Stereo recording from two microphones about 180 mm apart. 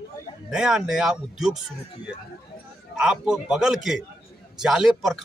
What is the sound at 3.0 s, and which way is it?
Speech, 5° right (ahead or behind).